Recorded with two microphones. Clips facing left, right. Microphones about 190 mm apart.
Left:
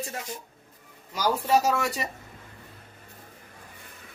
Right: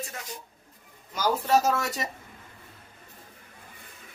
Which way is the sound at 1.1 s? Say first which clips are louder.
Even; 5° left (ahead or behind).